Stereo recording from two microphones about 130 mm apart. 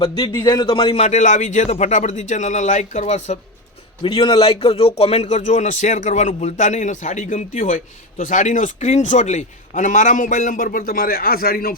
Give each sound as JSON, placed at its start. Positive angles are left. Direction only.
{"t": 0.0, "sound": "speech", "side_deg": 45}
{"t": 1.0, "sound": "a man's voice", "side_deg": 65}
{"t": 4.0, "sound": "a man's voice", "side_deg": 45}
{"t": 8.2, "sound": "a man's voice", "side_deg": 75}